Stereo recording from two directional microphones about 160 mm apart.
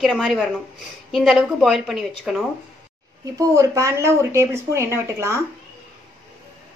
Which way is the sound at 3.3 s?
20° right (ahead or behind).